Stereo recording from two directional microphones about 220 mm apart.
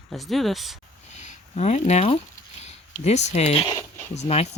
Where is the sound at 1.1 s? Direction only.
30° left (ahead or behind).